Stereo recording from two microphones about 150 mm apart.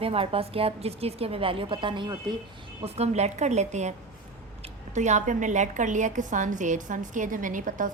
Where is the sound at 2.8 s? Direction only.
45° right (ahead or behind); by 7.9 s 60° right (ahead or behind).